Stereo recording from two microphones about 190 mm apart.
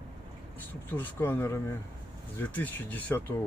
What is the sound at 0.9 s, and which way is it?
Speech, 10° left (ahead or behind).